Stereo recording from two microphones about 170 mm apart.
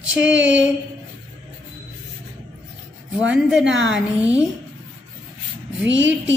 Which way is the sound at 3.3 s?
5° right (ahead or behind).